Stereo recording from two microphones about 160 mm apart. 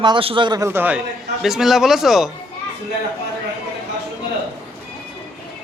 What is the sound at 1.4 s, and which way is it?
Speech, centre (ahead or behind).